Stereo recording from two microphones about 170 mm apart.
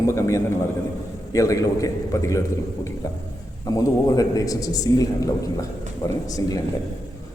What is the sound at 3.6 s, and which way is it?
A man's voice, 20° left (ahead or behind).